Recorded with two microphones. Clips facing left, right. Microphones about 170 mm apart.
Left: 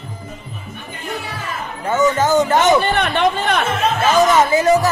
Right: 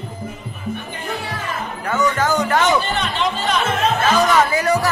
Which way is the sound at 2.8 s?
60° left (ahead or behind).